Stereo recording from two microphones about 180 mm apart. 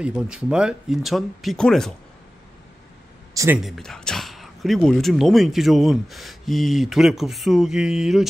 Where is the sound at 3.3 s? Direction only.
15° right (ahead or behind).